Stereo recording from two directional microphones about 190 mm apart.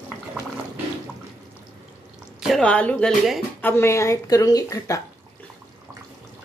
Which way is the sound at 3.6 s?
15° left (ahead or behind).